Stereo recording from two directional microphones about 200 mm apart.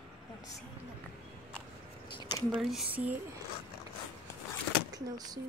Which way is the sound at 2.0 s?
25° left (ahead or behind).